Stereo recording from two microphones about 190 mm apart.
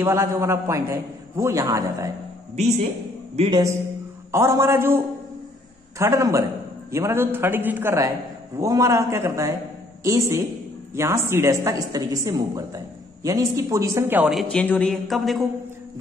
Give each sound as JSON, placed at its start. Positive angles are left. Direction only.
{"t": 0.0, "sound": "speech", "side_deg": -15}
{"t": 3.3, "sound": "a man's voice", "side_deg": -25}